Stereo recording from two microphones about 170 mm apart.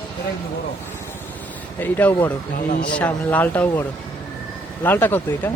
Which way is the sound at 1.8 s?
10° left (ahead or behind).